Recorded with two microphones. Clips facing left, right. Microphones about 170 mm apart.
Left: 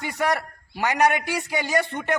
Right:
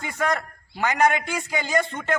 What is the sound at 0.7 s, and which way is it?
A man's voice, 15° left (ahead or behind).